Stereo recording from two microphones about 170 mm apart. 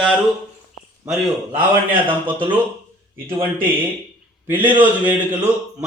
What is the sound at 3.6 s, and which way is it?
A man's voice, 10° right (ahead or behind).